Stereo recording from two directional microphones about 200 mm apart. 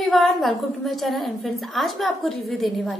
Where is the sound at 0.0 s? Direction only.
Centre (ahead or behind).